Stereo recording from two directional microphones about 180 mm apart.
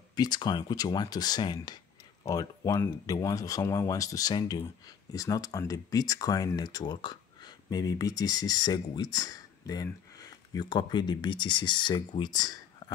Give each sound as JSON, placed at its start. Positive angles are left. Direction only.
{"t": 0.1, "sound": "speech", "side_deg": 20}